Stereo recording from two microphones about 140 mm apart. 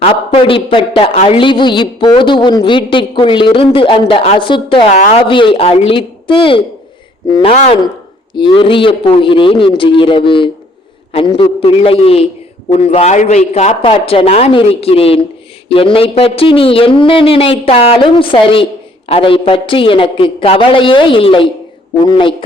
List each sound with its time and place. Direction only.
0.0 s a woman's voice: 40° left (ahead or behind)
4.9 s speech: 55° left (ahead or behind)
5.2 s a woman's voice: 35° left (ahead or behind)
8.4 s a woman's voice: 35° left (ahead or behind)